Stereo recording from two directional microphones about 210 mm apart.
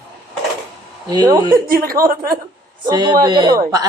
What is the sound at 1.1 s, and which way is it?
Speech, 20° right (ahead or behind).